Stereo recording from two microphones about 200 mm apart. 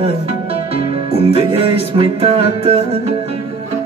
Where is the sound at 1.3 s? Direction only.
30° right (ahead or behind).